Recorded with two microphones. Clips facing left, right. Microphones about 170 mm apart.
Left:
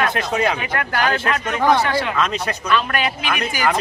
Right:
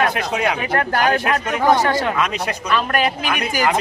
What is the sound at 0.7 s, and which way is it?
Speech, 40° right (ahead or behind).